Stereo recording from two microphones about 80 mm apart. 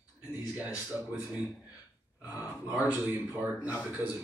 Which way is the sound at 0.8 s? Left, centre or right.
Centre.